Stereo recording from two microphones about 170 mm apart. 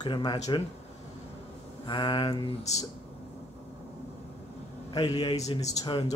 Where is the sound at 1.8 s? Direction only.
30° left (ahead or behind).